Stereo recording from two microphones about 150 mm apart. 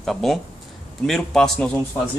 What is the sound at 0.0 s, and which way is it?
A man's voice, centre (ahead or behind).